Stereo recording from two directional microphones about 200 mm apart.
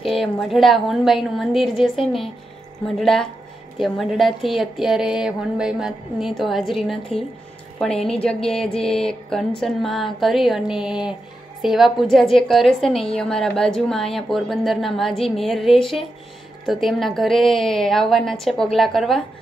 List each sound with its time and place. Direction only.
0.0 s a woman's voice: centre (ahead or behind)